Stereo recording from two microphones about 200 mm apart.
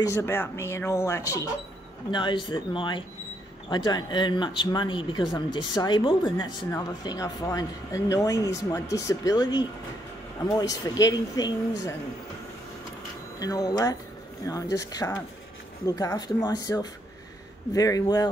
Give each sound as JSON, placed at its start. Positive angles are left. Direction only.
{"t": 0.0, "sound": "speech", "side_deg": 15}
{"t": 13.4, "sound": "speech", "side_deg": 15}